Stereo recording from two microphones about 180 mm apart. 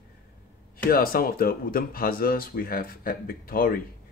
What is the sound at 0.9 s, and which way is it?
Speech, 55° left (ahead or behind).